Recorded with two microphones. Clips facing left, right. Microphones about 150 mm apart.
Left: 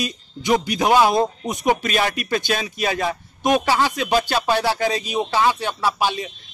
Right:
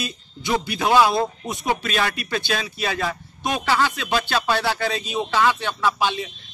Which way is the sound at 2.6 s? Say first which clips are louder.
Left 3 dB; 20° left (ahead or behind).